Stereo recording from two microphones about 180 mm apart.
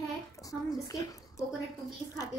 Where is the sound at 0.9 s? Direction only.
20° left (ahead or behind).